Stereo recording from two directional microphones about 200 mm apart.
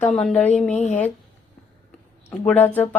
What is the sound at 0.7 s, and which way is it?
Speech, 35° left (ahead or behind).